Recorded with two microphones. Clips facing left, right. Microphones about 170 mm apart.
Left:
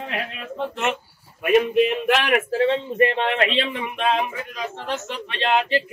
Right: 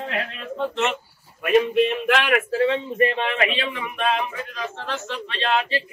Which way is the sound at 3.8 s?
20° left (ahead or behind).